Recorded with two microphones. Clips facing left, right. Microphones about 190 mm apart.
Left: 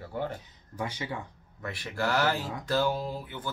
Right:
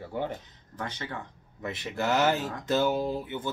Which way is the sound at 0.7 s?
10° left (ahead or behind).